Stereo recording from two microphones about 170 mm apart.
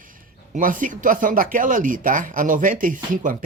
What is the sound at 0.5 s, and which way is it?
Speech, 50° right (ahead or behind).